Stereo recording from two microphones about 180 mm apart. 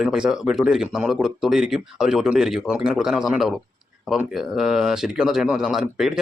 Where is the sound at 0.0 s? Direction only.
5° right (ahead or behind).